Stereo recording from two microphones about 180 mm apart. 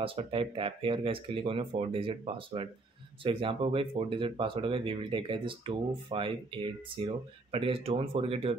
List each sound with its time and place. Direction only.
0.0 s speech: 30° right (ahead or behind)